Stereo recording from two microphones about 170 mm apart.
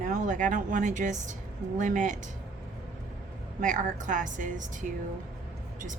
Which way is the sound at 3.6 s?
50° right (ahead or behind).